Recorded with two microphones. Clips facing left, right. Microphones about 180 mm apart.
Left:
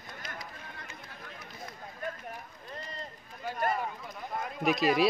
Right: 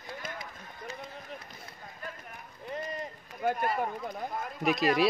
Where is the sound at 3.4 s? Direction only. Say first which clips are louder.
Right 9 dB; 55° right (ahead or behind).